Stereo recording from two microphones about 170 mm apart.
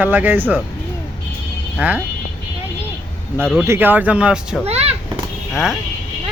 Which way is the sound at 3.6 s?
15° right (ahead or behind).